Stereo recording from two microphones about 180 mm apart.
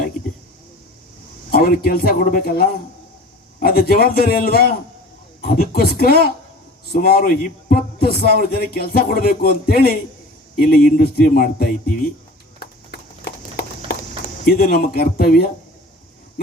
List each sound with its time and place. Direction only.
1.5 s speech: 55° left (ahead or behind)
12.5 s a sound: 60° left (ahead or behind)
14.4 s speech: 60° left (ahead or behind)